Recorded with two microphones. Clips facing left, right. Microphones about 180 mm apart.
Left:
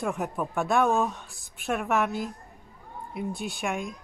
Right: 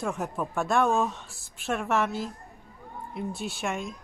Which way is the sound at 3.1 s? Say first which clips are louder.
Left 1 dB; centre (ahead or behind).